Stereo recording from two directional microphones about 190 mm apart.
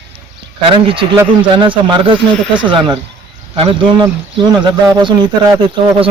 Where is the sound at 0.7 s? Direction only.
25° right (ahead or behind).